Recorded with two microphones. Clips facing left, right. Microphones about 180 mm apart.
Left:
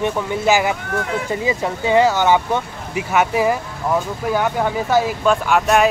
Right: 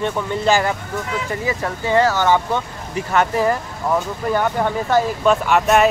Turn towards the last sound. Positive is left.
turn(degrees=0)  # may be behind; listen again after turning